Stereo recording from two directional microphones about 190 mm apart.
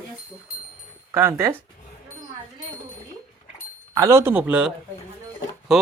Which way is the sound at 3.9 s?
15° right (ahead or behind).